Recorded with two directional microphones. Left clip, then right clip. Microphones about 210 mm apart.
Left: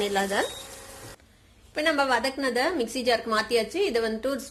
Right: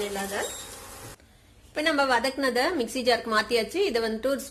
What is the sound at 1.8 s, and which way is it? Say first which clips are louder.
A woman's voice: even; centre (ahead or behind).